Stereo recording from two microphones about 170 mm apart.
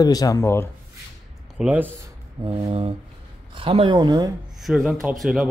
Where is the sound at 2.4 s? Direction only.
25° right (ahead or behind).